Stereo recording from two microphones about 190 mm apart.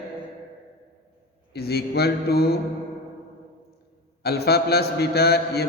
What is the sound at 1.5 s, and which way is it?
A man's voice, 55° left (ahead or behind).